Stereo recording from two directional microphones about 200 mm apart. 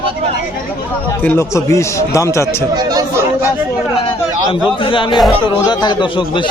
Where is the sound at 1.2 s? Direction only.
10° left (ahead or behind).